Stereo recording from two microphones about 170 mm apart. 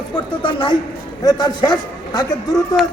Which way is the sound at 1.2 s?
25° left (ahead or behind).